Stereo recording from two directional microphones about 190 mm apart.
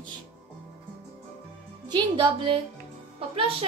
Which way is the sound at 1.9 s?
30° right (ahead or behind).